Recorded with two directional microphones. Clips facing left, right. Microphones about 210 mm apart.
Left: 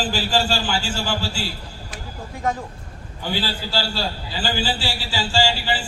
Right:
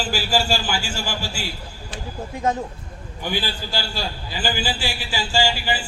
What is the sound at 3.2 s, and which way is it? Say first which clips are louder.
A man's voice: left 1 dB; 15° right (ahead or behind).